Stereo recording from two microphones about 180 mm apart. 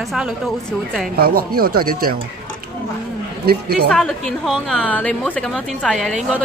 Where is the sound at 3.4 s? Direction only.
60° right (ahead or behind).